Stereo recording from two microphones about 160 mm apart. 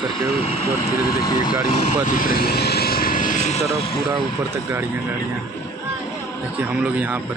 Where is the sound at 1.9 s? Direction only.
55° left (ahead or behind).